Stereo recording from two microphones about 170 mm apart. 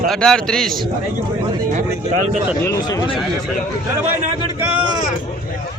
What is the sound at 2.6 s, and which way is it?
Speech, 20° left (ahead or behind).